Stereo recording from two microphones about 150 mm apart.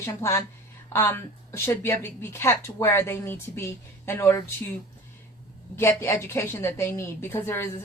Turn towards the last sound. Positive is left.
turn(degrees=15)  # may be behind; listen again after turning